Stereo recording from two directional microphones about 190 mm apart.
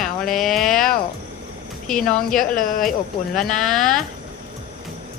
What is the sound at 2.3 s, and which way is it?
Speech, 45° left (ahead or behind).